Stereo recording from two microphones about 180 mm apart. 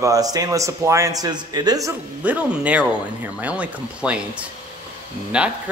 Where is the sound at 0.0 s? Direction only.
20° right (ahead or behind).